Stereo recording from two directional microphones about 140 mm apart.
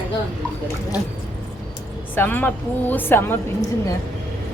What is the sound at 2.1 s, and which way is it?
A woman's voice, 15° left (ahead or behind).